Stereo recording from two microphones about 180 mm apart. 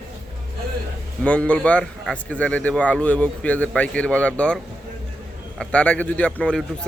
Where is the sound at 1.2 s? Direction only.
5° left (ahead or behind).